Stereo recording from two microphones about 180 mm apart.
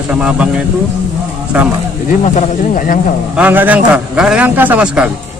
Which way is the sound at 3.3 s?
10° right (ahead or behind).